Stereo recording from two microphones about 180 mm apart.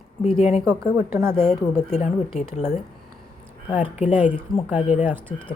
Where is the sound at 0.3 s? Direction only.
35° left (ahead or behind).